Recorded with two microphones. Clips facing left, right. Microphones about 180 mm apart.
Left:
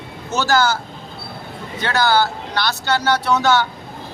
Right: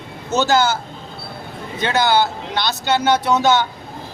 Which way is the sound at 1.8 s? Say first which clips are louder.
Right 1 dB; 20° right (ahead or behind).